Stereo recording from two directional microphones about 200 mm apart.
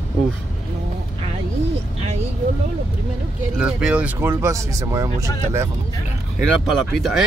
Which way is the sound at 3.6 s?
5° right (ahead or behind).